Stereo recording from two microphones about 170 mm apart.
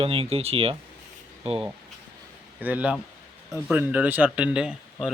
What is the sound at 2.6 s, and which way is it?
Speech, 10° right (ahead or behind).